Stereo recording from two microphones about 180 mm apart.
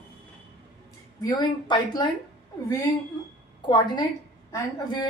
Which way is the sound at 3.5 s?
25° left (ahead or behind).